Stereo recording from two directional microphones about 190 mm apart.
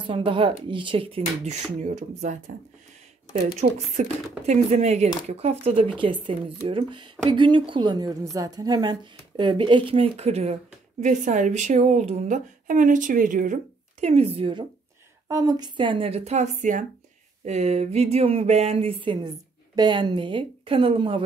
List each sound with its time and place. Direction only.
0.0 s speech: 25° right (ahead or behind)
3.6 s a woman's voice: 40° right (ahead or behind)